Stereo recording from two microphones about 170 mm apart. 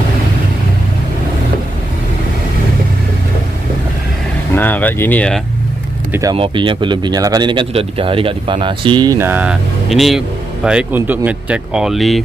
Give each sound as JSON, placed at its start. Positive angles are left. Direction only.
{"t": 4.6, "sound": "speech", "side_deg": 10}
{"t": 6.3, "sound": "speech", "side_deg": -30}